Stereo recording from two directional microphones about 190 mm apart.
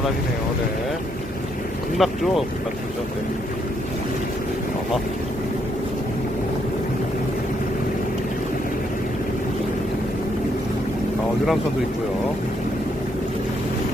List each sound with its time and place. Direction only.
2.0 s speech: centre (ahead or behind)